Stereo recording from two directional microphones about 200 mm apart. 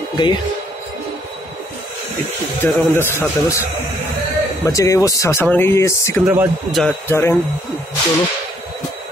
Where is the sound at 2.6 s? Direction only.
10° left (ahead or behind).